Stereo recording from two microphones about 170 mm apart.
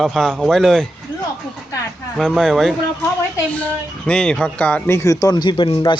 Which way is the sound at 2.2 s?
5° left (ahead or behind).